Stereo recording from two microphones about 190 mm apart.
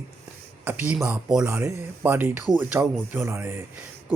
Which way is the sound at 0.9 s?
5° right (ahead or behind).